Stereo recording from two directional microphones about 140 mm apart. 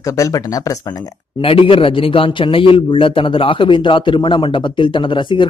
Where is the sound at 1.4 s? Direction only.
40° left (ahead or behind).